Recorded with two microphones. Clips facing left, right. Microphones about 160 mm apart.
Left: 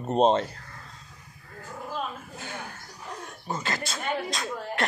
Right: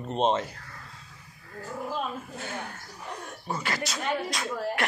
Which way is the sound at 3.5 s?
25° left (ahead or behind).